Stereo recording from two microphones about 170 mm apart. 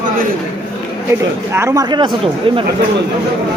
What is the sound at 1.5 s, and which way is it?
Speech, 20° right (ahead or behind).